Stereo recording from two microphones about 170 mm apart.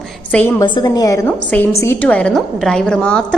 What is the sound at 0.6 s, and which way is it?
A woman's voice, 25° left (ahead or behind).